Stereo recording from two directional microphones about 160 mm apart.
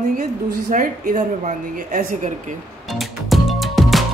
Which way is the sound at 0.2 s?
55° right (ahead or behind).